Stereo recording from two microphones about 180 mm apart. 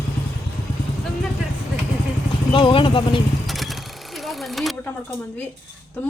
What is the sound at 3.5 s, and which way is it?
Sewing machine, centre (ahead or behind).